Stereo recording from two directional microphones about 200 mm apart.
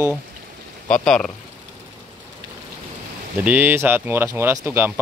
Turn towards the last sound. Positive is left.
turn(degrees=-10)  # may be behind; listen again after turning